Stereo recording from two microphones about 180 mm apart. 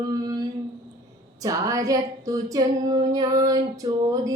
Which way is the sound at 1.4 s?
20° right (ahead or behind).